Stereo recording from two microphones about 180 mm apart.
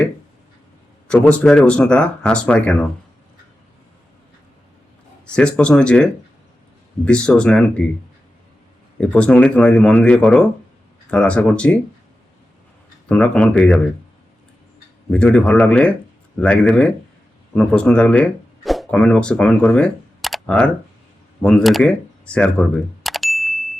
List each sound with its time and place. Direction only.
1.0 s speech: 5° left (ahead or behind)
5.2 s speech: 5° left (ahead or behind)
9.0 s speech: 5° left (ahead or behind)
13.1 s speech: 5° left (ahead or behind)
15.1 s speech: 5° left (ahead or behind)
21.4 s cash register: centre (ahead or behind)